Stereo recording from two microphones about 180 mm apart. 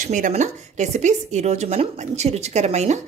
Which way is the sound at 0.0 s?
45° right (ahead or behind).